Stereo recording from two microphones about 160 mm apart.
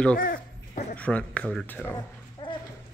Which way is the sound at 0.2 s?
60° left (ahead or behind).